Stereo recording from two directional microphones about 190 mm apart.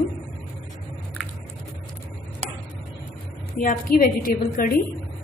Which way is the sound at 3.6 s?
45° left (ahead or behind).